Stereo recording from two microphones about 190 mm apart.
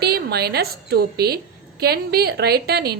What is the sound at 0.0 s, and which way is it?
A woman's voice, 55° right (ahead or behind).